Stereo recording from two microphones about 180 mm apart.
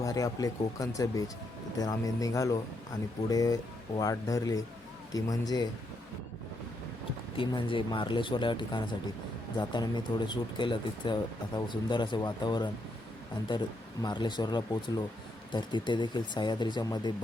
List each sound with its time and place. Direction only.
0.0 s speech: 20° left (ahead or behind)
7.3 s speech: 30° left (ahead or behind)
14.0 s speech: 25° left (ahead or behind)